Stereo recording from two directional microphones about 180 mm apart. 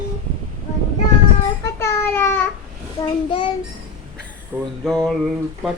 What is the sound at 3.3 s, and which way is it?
Child singing, 25° left (ahead or behind).